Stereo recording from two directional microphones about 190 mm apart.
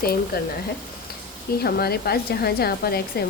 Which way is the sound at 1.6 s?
55° left (ahead or behind).